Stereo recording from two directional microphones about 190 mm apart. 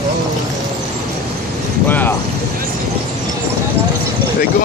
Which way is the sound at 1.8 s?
10° left (ahead or behind).